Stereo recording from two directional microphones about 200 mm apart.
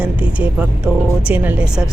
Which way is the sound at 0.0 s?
5° right (ahead or behind).